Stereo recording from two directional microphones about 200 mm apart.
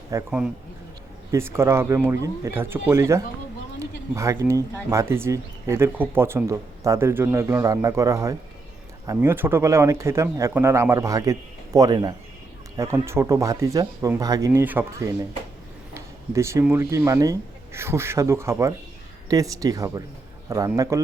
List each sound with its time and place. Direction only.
0.1 s speech: 10° right (ahead or behind)